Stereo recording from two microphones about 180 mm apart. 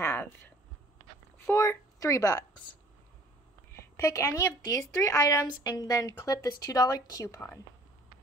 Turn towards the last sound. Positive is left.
turn(degrees=15)  # may be behind; listen again after turning